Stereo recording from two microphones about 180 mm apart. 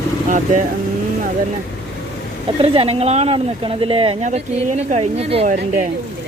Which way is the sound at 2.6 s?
30° right (ahead or behind).